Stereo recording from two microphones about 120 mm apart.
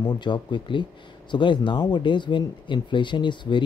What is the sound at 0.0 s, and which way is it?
Speech, 40° left (ahead or behind).